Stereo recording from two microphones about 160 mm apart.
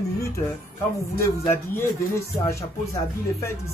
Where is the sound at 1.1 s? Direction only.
15° left (ahead or behind).